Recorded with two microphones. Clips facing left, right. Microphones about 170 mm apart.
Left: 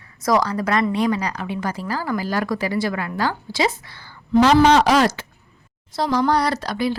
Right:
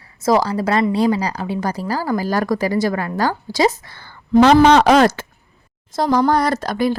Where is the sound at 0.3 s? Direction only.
30° right (ahead or behind).